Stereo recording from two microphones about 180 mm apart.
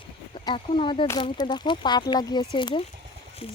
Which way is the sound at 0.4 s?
30° left (ahead or behind).